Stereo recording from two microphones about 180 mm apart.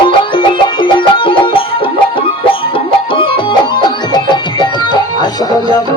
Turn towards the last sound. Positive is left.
turn(degrees=20)  # may be behind; listen again after turning